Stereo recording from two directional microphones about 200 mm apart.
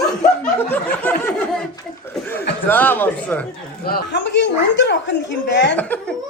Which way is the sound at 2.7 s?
10° left (ahead or behind).